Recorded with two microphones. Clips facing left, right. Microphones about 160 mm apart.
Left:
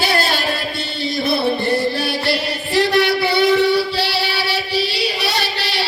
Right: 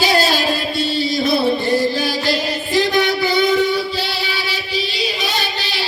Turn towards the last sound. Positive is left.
turn(degrees=70)  # may be behind; listen again after turning